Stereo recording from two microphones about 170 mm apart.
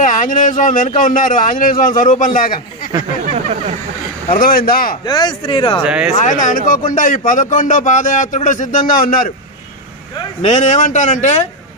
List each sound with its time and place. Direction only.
0.0 s speech: 50° left (ahead or behind)
4.4 s speech: 60° left (ahead or behind)
5.0 s speech: 25° left (ahead or behind)
5.8 s speech: 5° right (ahead or behind)
6.2 s speech: 50° left (ahead or behind)
10.4 s speech: 45° left (ahead or behind)